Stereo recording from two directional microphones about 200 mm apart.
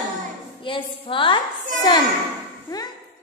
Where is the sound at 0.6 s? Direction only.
25° left (ahead or behind).